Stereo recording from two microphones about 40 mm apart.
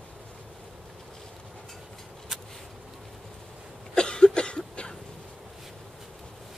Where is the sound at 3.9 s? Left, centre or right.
Left.